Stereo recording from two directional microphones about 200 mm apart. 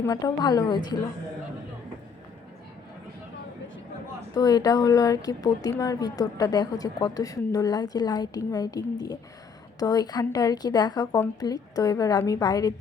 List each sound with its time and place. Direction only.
0.0 s a woman's voice: 15° left (ahead or behind)
4.4 s a woman's voice: 20° left (ahead or behind)